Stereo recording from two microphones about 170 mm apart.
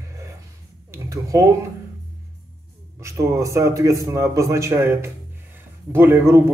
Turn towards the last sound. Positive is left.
turn(degrees=-15)  # may be behind; listen again after turning